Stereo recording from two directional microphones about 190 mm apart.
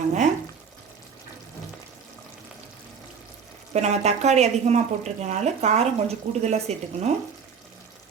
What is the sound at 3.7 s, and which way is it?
A woman's voice, 35° right (ahead or behind).